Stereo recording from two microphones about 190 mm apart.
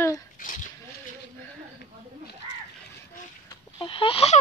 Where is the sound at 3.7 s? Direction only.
25° left (ahead or behind).